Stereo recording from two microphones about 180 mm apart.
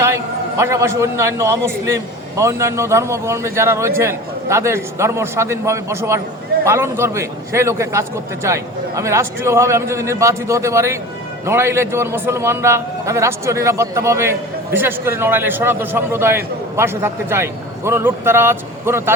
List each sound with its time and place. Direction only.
0.6 s a man's voice: 15° right (ahead or behind)